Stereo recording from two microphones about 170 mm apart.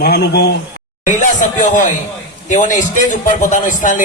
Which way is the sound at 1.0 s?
50° left (ahead or behind).